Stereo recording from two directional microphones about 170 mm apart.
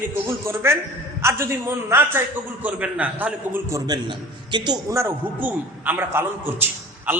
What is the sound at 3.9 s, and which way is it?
A man's voice, 25° right (ahead or behind).